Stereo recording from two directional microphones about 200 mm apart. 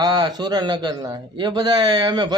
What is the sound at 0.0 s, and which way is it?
A man's voice, 20° right (ahead or behind).